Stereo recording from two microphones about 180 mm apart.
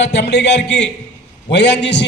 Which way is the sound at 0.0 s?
70° left (ahead or behind).